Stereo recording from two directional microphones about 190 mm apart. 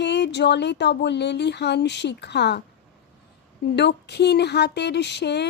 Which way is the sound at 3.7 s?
65° left (ahead or behind).